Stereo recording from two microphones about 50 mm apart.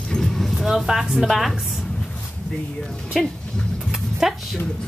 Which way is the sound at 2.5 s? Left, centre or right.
Centre.